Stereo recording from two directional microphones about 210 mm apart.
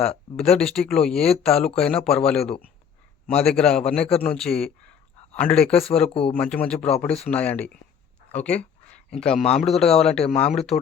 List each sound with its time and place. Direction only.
0.3 s a man's voice: centre (ahead or behind)
5.8 s speech: 30° left (ahead or behind)
6.3 s speech: 5° left (ahead or behind)
8.3 s a sound: 5° left (ahead or behind)
9.6 s speech: centre (ahead or behind)